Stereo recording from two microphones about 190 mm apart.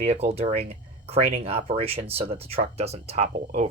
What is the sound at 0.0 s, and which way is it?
Speech, 35° right (ahead or behind).